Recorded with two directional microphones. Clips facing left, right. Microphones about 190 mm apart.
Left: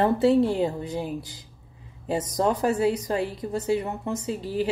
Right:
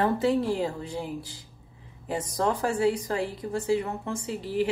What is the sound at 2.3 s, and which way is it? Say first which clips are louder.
A woman's voice: left 3 dB; 20° left (ahead or behind).